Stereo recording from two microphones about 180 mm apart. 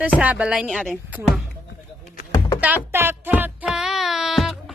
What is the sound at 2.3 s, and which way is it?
Music, 20° left (ahead or behind).